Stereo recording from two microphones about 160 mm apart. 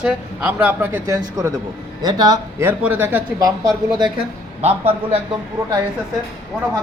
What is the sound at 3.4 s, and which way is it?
Speech, 25° right (ahead or behind).